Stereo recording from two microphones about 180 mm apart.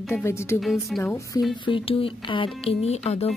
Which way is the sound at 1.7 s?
30° left (ahead or behind).